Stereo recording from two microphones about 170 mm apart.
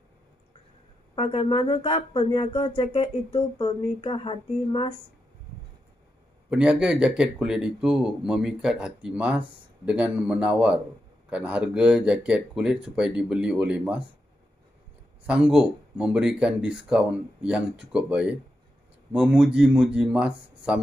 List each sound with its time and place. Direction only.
1.1 s speech: 35° left (ahead or behind)
6.5 s speech: 5° right (ahead or behind)
15.2 s speech: 5° right (ahead or behind)